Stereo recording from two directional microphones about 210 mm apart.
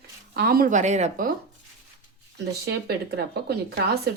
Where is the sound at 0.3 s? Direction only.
45° right (ahead or behind).